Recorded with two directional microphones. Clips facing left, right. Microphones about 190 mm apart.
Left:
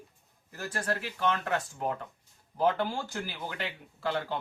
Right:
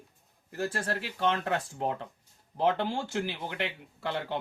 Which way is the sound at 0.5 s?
30° right (ahead or behind).